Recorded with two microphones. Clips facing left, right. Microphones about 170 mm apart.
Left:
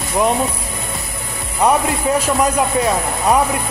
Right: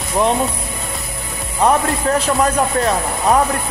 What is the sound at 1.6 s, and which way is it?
A man's voice, 10° left (ahead or behind).